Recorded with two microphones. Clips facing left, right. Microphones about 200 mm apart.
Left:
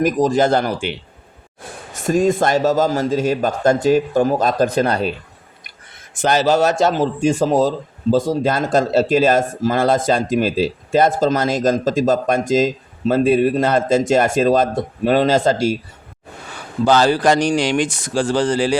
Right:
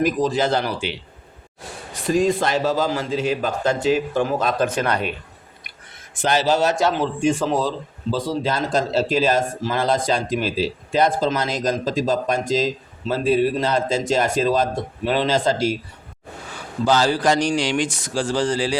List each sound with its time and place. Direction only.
0.0 s speech: 45° left (ahead or behind)
6.1 s speech: 45° left (ahead or behind)
16.8 s speech: 60° left (ahead or behind)